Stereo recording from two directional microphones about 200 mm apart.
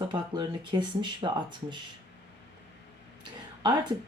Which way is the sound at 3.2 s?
20° right (ahead or behind).